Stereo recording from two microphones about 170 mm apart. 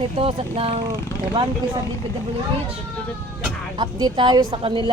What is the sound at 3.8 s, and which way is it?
A woman's voice, 25° right (ahead or behind).